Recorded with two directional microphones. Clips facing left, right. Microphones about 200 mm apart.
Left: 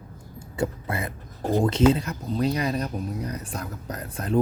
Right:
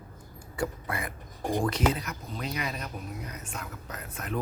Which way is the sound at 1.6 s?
25° left (ahead or behind).